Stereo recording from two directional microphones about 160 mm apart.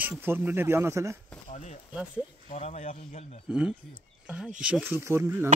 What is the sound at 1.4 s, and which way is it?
Speech, 50° left (ahead or behind).